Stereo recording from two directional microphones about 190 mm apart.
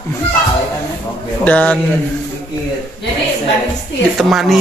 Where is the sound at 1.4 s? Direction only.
10° left (ahead or behind).